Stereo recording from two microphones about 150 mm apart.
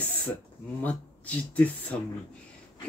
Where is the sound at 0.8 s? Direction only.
10° left (ahead or behind).